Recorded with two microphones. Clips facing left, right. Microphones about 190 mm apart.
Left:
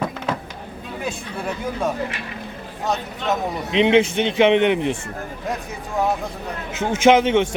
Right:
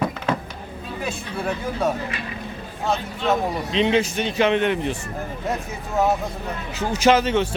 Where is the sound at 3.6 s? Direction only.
20° left (ahead or behind).